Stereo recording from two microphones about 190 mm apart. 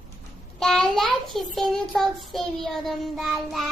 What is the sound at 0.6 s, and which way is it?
Child singing, 5° left (ahead or behind).